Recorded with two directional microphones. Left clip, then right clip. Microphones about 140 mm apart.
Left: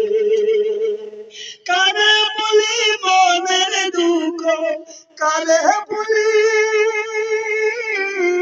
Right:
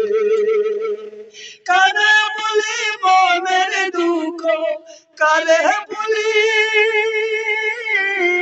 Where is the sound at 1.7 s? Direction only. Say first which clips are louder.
Right 2 dB; 45° right (ahead or behind).